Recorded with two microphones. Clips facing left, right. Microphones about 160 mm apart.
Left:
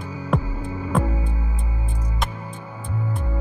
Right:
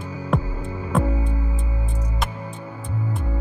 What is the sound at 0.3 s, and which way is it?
Music, centre (ahead or behind).